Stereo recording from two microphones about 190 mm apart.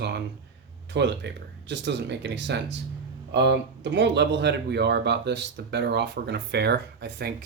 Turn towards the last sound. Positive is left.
turn(degrees=-60)  # may be behind; listen again after turning